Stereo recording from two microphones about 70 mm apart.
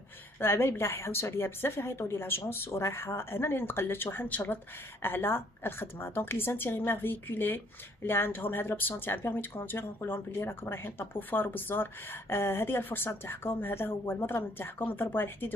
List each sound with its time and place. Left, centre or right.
0.4 s speech: left